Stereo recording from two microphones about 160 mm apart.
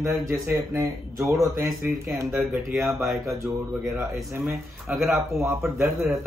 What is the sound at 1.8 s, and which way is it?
A man's voice, 10° right (ahead or behind).